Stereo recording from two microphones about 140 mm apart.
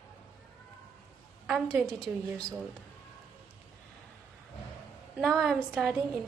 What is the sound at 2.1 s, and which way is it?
Speech, 15° right (ahead or behind).